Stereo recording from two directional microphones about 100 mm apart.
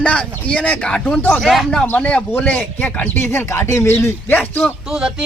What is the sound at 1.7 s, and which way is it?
A man's voice, 15° left (ahead or behind).